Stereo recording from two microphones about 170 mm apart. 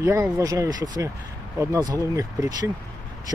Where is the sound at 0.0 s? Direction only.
15° right (ahead or behind).